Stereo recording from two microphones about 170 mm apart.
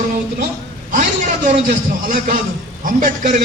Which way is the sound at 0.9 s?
45° right (ahead or behind).